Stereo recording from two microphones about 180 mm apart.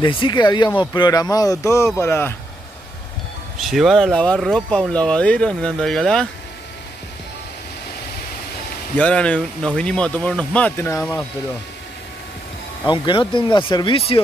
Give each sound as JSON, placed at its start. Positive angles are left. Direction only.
{"t": 0.0, "sound": "speech", "side_deg": 25}
{"t": 3.5, "sound": "speech", "side_deg": 0}
{"t": 8.9, "sound": "speech", "side_deg": 5}
{"t": 12.8, "sound": "speech", "side_deg": 25}